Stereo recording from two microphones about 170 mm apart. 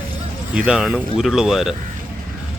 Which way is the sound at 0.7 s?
5° right (ahead or behind).